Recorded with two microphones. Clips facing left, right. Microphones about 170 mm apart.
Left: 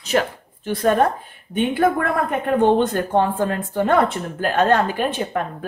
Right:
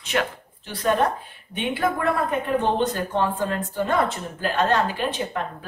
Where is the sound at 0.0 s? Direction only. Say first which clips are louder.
Left 5 dB; 40° left (ahead or behind).